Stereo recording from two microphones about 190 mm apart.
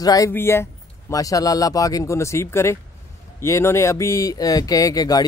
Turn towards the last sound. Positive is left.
turn(degrees=20)  # may be behind; listen again after turning